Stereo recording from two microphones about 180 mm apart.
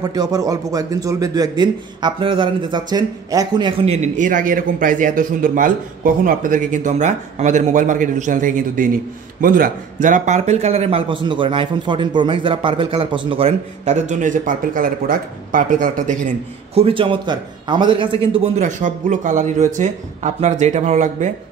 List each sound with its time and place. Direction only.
0.0 s a man's voice: 20° right (ahead or behind)
3.8 s speech: 40° right (ahead or behind)
16.7 s a man's voice: 30° right (ahead or behind)
18.3 s a man's voice: 40° right (ahead or behind)